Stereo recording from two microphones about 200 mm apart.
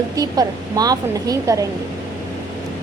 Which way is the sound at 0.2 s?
20° right (ahead or behind).